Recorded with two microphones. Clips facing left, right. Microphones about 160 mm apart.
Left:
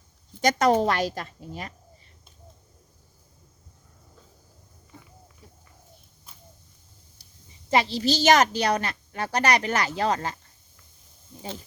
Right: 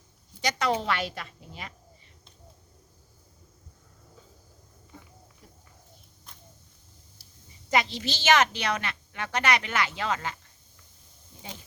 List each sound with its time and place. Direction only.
0.4 s a woman's voice: 45° left (ahead or behind)
7.2 s a sound: 5° right (ahead or behind)
7.7 s a woman's voice: 35° left (ahead or behind)